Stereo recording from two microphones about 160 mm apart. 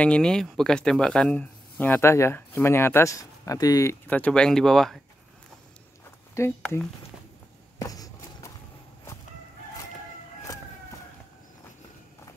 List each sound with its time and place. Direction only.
0.0 s speech: 5° left (ahead or behind); by 3.9 s 20° left (ahead or behind)
4.1 s speech: 5° left (ahead or behind)
6.6 s speech: 5° left (ahead or behind)
7.8 s a sound: 20° left (ahead or behind)